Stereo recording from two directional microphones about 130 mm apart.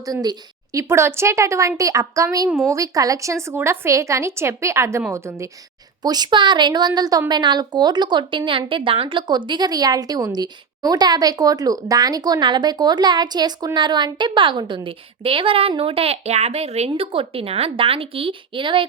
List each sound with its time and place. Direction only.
0.0 s a woman's voice: 30° right (ahead or behind)